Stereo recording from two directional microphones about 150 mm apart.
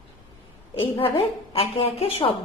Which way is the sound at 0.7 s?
35° left (ahead or behind).